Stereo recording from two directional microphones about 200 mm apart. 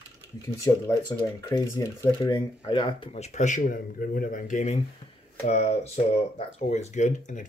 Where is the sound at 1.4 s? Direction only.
15° left (ahead or behind); by 4.7 s 40° left (ahead or behind).